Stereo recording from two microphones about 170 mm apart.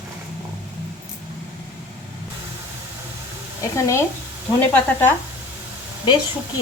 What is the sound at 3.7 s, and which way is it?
Speech, 15° left (ahead or behind).